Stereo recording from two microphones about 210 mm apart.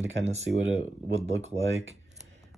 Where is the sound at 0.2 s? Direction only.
30° right (ahead or behind).